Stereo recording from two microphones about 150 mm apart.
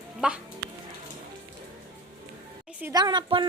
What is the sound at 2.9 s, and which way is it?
Speech, 30° right (ahead or behind).